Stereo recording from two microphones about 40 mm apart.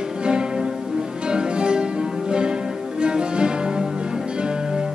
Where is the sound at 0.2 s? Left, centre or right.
Centre.